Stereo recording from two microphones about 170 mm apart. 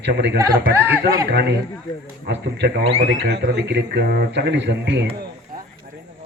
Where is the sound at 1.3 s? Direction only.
85° right.